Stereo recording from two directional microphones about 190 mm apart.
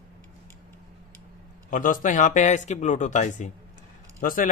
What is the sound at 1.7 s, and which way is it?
Speech, 45° left (ahead or behind).